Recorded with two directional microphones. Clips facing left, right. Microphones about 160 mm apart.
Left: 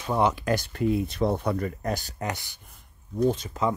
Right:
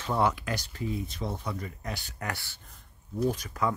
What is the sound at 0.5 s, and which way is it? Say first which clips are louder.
Speech: left 9 dB; 60° left (ahead or behind).